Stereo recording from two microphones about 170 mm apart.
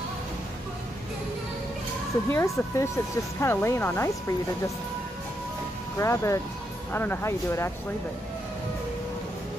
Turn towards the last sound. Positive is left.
turn(degrees=15)  # may be behind; listen again after turning